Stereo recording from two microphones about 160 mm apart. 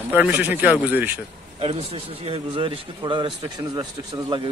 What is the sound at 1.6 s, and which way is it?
Speech, 35° right (ahead or behind).